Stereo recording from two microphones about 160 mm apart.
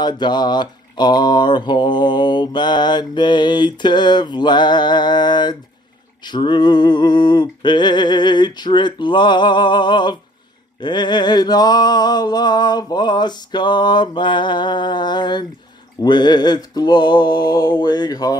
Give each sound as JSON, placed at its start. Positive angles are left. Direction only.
{"t": 0.0, "sound": "mantra", "side_deg": 25}